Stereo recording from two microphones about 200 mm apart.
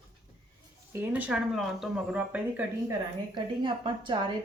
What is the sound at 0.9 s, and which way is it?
Speech, 10° right (ahead or behind).